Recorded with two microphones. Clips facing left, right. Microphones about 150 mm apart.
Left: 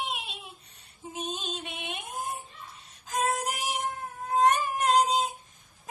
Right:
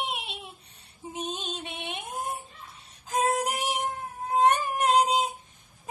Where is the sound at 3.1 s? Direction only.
25° right (ahead or behind).